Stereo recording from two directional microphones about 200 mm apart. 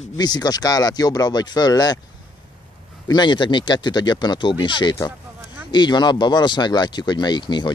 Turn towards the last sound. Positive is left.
turn(degrees=20)  # may be behind; listen again after turning